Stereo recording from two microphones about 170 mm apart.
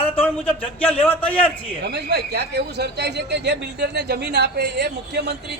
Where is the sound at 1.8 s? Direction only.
80° right.